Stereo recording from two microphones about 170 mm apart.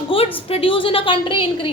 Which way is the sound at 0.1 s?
30° left (ahead or behind).